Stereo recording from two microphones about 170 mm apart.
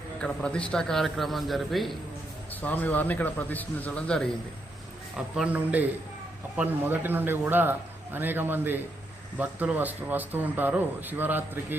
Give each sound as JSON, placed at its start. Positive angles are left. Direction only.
{"t": 0.2, "sound": "a man's voice", "side_deg": 5}
{"t": 5.1, "sound": "speech", "side_deg": -5}